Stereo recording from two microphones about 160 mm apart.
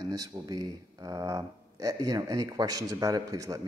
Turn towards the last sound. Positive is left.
turn(degrees=-20)  # may be behind; listen again after turning